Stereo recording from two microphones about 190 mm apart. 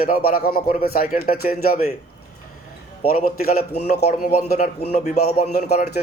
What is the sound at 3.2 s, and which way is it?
Speech, 55° left (ahead or behind).